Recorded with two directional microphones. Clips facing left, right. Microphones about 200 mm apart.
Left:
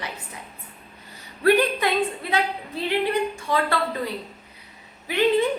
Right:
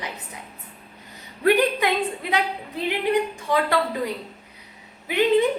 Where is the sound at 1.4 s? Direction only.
15° right (ahead or behind).